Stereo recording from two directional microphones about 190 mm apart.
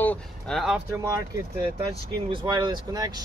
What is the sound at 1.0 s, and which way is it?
Speech, 15° right (ahead or behind).